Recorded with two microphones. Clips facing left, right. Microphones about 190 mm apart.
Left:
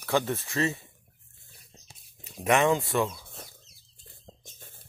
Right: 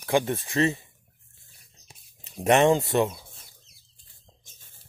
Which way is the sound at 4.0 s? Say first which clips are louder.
Left 10 dB; 60° left (ahead or behind).